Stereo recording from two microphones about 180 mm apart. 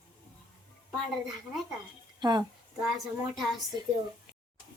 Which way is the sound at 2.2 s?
25° right (ahead or behind).